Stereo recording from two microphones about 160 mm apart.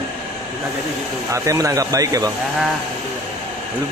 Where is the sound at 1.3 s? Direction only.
20° right (ahead or behind).